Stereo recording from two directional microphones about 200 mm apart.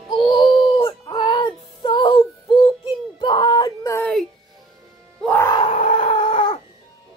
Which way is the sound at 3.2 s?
20° left (ahead or behind).